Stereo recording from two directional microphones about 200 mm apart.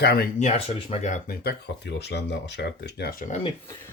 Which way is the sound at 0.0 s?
55° left (ahead or behind).